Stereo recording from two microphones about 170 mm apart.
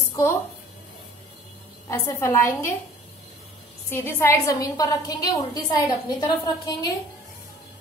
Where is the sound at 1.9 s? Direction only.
15° left (ahead or behind).